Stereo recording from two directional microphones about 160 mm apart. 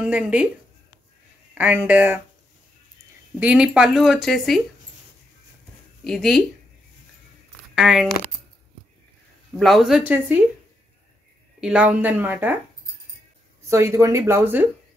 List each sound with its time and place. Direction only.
0.0 s speech: 10° right (ahead or behind)
1.5 s speech: 10° right (ahead or behind)
3.3 s speech: 5° right (ahead or behind)
6.0 s speech: centre (ahead or behind)
7.7 s speech: 5° right (ahead or behind)
9.6 s speech: centre (ahead or behind)
11.6 s speech: 5° right (ahead or behind)
13.7 s speech: 20° right (ahead or behind)